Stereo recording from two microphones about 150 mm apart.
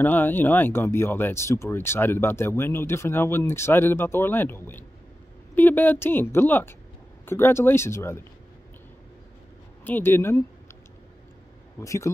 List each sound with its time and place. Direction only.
0.0 s speech: 10° left (ahead or behind)
9.8 s speech: 15° left (ahead or behind)
11.8 s speech: 20° left (ahead or behind)